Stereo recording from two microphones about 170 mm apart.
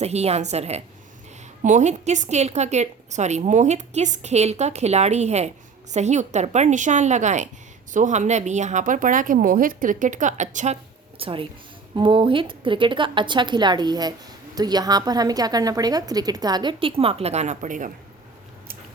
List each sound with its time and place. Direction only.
0.0 s a woman's voice: 40° right (ahead or behind)
11.2 s a woman's voice: 30° right (ahead or behind); by 17.9 s 50° right (ahead or behind)